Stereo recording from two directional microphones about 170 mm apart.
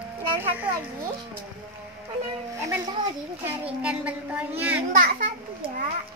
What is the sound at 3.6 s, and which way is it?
A child's voice, 5° right (ahead or behind).